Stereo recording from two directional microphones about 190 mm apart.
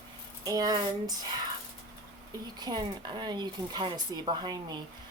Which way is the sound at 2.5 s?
20° right (ahead or behind).